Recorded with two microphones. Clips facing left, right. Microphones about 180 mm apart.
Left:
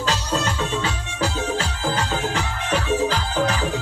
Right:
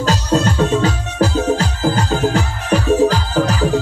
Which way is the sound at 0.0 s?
45° right (ahead or behind).